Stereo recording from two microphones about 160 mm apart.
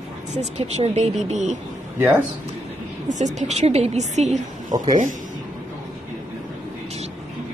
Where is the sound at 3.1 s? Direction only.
50° right (ahead or behind).